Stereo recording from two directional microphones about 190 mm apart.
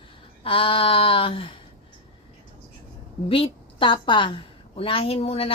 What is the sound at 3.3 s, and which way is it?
A woman's voice, 25° left (ahead or behind).